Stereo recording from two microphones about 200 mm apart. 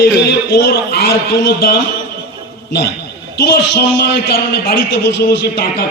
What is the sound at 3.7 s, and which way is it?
A man's voice, 55° left (ahead or behind).